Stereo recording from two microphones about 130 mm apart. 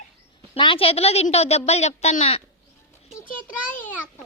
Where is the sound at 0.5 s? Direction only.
45° left (ahead or behind).